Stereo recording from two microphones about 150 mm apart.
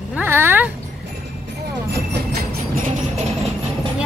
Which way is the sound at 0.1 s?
15° right (ahead or behind).